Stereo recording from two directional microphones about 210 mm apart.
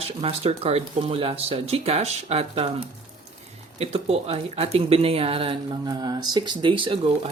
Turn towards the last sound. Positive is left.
turn(degrees=-25)  # may be behind; listen again after turning